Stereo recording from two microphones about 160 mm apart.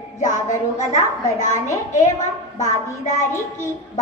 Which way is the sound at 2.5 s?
50° left (ahead or behind).